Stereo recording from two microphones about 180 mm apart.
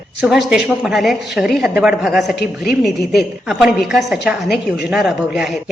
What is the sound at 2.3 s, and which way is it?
Speech, 65° left (ahead or behind).